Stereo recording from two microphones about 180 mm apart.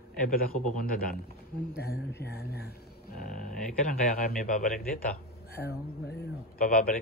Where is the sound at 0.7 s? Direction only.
50° left (ahead or behind).